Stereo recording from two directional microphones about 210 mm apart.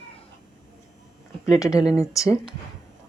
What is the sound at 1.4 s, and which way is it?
Speech, 15° left (ahead or behind).